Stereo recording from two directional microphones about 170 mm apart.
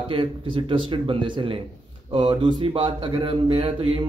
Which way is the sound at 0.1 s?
30° right (ahead or behind).